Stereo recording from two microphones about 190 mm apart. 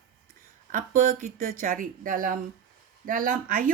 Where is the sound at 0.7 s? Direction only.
45° right (ahead or behind).